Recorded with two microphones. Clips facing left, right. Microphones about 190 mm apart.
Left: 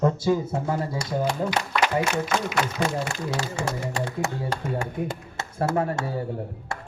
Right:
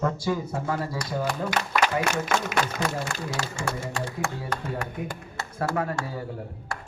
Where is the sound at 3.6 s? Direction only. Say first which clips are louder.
Left 2 dB; 20° left (ahead or behind).